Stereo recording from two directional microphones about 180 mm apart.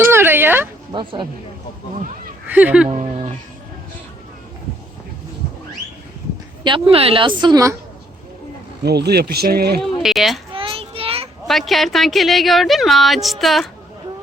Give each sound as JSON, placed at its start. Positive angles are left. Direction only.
{"t": 0.0, "sound": "a sound", "side_deg": -15}
{"t": 0.9, "sound": "a woman's voice", "side_deg": -25}
{"t": 2.5, "sound": "speech", "side_deg": -10}
{"t": 2.9, "sound": "speech", "side_deg": -35}
{"t": 6.7, "sound": "a woman's voice", "side_deg": -30}
{"t": 8.8, "sound": "speech", "side_deg": -65}
{"t": 10.0, "sound": "speech", "side_deg": 0}
{"t": 10.5, "sound": "child singing", "side_deg": -30}
{"t": 11.4, "sound": "speech", "side_deg": 0}